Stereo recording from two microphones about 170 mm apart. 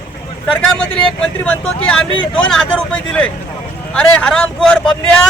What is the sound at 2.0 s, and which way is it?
Speech, 30° left (ahead or behind).